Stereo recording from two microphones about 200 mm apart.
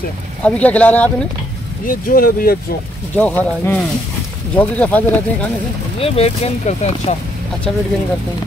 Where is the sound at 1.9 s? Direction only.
45° left (ahead or behind).